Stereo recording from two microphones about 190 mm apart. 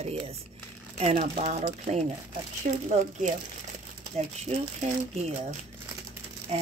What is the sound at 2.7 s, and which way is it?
Speech, 45° right (ahead or behind).